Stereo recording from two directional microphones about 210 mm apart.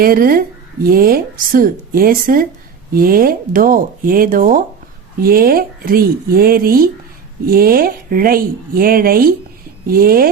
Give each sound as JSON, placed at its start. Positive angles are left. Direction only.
{"t": 0.0, "sound": "speech", "side_deg": -45}